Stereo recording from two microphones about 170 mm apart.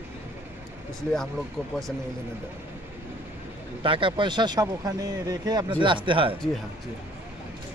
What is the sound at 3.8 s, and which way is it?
Speech, 30° right (ahead or behind).